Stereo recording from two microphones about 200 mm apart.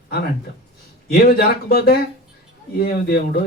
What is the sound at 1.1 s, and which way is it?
Speech, 50° left (ahead or behind).